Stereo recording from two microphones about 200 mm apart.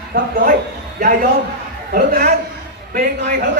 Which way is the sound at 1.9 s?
45° right (ahead or behind).